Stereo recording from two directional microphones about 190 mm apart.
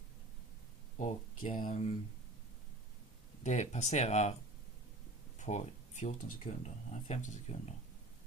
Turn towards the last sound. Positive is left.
turn(degrees=35)  # may be behind; listen again after turning